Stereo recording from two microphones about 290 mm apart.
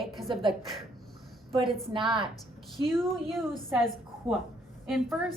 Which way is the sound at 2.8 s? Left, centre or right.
Centre.